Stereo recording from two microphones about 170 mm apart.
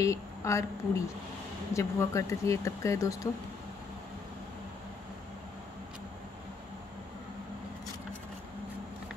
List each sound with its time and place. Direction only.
0.0 s speech: 15° left (ahead or behind)